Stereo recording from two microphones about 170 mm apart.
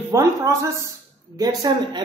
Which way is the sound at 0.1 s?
20° right (ahead or behind).